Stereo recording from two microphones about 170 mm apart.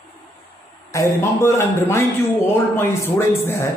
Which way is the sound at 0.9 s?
15° left (ahead or behind).